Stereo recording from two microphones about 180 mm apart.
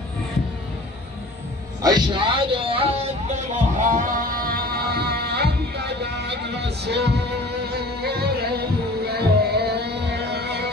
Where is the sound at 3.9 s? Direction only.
50° right (ahead or behind).